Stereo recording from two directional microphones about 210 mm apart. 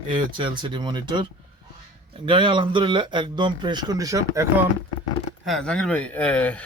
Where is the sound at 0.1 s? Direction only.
25° right (ahead or behind).